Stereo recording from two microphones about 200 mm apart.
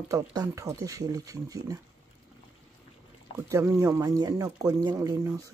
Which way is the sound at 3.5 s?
15° right (ahead or behind).